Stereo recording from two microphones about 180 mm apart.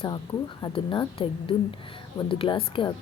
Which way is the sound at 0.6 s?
25° left (ahead or behind).